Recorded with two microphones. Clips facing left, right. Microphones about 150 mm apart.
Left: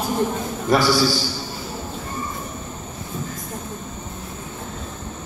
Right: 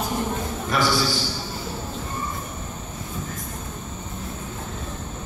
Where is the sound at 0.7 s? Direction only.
35° left (ahead or behind).